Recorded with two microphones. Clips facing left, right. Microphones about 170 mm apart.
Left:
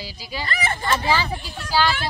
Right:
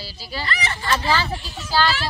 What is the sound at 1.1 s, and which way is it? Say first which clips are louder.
Speech: even; 15° left (ahead or behind).